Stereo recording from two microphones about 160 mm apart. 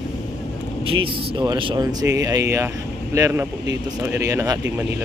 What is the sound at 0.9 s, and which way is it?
Speech, 30° right (ahead or behind).